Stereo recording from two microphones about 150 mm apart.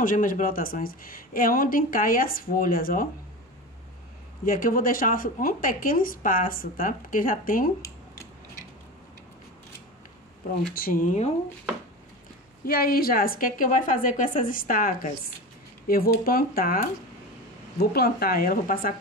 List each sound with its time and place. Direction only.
0.0 s a woman's voice: 60° left (ahead or behind)
4.5 s a woman's voice: 70° left (ahead or behind)
10.7 s speech: 75° left (ahead or behind); by 11.3 s 55° left (ahead or behind)
12.6 s a woman's voice: 90° left
17.7 s speech: 90° left; by 18.9 s 70° left (ahead or behind)